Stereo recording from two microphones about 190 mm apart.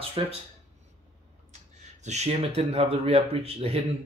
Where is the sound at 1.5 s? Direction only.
35° right (ahead or behind).